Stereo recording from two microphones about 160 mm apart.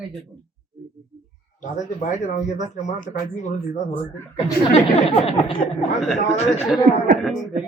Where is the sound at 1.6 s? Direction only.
50° left (ahead or behind).